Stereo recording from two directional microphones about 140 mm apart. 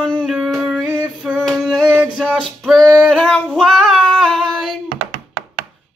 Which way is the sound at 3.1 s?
5° left (ahead or behind).